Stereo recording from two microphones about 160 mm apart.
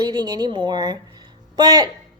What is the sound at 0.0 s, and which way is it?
Speech, 25° right (ahead or behind).